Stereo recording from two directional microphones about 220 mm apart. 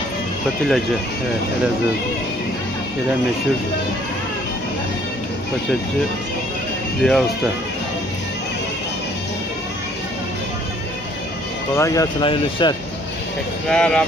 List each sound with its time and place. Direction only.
7.0 s speech: centre (ahead or behind)
11.7 s speech: 15° left (ahead or behind)
13.7 s speech: 5° left (ahead or behind)